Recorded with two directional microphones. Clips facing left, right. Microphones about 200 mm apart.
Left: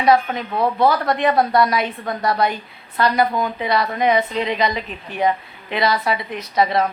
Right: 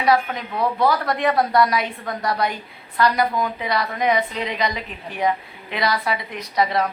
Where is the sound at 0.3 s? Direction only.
25° left (ahead or behind).